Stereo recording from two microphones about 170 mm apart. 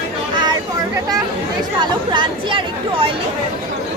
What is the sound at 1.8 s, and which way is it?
Speech, 25° right (ahead or behind).